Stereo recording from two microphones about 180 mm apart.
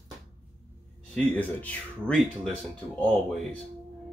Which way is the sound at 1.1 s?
10° left (ahead or behind).